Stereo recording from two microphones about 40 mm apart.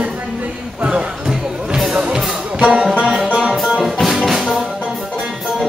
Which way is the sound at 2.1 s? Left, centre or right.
Right.